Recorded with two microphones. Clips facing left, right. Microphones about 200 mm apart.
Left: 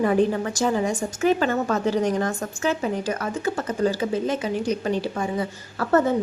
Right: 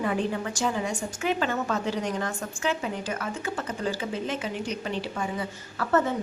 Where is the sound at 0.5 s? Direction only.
45° left (ahead or behind).